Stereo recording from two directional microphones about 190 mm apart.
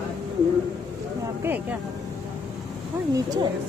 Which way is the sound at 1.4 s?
10° right (ahead or behind).